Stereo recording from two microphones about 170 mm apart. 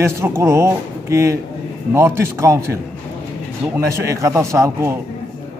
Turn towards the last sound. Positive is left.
turn(degrees=-15)  # may be behind; listen again after turning